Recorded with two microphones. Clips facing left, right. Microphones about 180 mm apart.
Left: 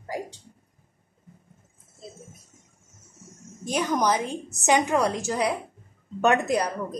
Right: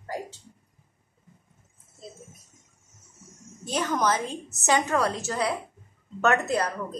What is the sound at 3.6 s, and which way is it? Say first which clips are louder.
A woman's voice: left 2 dB; 10° left (ahead or behind).